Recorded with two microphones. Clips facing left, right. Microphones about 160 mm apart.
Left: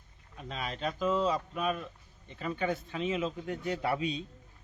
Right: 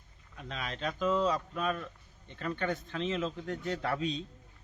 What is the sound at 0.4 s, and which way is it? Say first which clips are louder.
Speech: left 1 dB; 5° left (ahead or behind).